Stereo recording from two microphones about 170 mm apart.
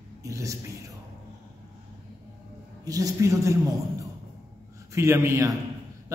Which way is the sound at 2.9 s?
20° right (ahead or behind).